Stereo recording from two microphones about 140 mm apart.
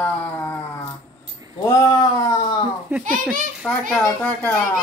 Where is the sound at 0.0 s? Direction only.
10° left (ahead or behind).